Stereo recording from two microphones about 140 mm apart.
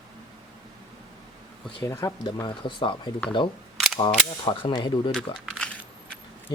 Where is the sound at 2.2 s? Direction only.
30° left (ahead or behind).